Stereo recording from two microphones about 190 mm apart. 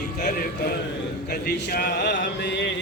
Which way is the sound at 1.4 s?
55° left (ahead or behind).